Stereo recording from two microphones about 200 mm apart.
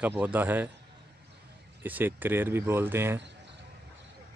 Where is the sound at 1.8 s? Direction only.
10° right (ahead or behind).